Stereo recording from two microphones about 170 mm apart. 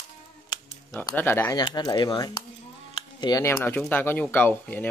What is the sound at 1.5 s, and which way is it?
Speech, 25° left (ahead or behind).